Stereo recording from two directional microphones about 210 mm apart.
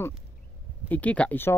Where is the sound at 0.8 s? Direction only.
5° left (ahead or behind).